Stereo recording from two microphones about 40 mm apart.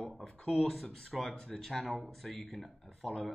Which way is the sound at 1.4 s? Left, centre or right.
Centre.